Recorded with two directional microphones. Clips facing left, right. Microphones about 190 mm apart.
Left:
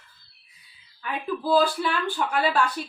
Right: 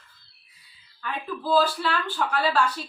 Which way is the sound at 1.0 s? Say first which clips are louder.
Left 3 dB; 15° left (ahead or behind).